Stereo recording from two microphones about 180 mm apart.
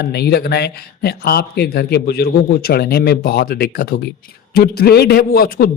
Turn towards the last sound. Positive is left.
turn(degrees=55)  # may be behind; listen again after turning